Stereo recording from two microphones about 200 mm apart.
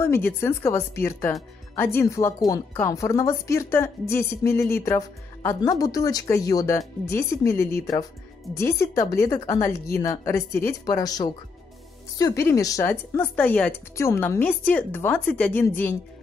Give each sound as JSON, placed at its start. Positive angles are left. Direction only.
{"t": 0.0, "sound": "speech", "side_deg": 10}